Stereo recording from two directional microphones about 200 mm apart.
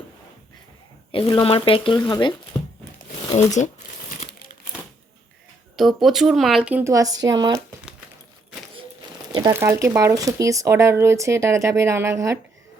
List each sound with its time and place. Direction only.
1.1 s speech: 25° left (ahead or behind)
3.3 s speech: 35° left (ahead or behind)
5.7 s speech: centre (ahead or behind); by 7.6 s 20° right (ahead or behind)
9.5 s speech: 10° right (ahead or behind)